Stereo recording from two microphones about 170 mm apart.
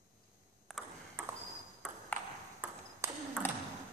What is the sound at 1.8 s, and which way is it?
Ping, 5° left (ahead or behind).